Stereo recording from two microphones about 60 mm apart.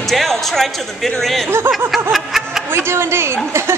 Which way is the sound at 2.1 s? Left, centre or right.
Centre.